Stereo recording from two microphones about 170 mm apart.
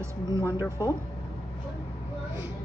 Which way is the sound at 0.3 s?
15° right (ahead or behind).